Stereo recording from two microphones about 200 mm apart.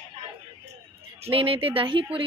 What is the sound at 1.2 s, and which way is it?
Speech, 30° right (ahead or behind).